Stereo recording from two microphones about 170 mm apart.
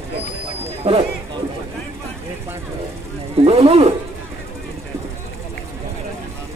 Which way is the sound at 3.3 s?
35° right (ahead or behind).